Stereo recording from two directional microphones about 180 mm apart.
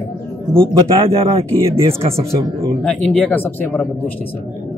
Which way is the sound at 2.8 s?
10° left (ahead or behind).